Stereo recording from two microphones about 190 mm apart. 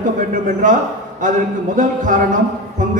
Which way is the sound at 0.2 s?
40° right (ahead or behind).